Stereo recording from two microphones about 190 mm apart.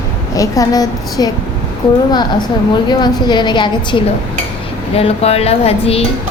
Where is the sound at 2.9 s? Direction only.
25° left (ahead or behind).